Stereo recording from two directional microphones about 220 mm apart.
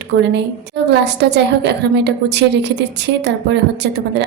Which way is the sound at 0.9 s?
50° right (ahead or behind).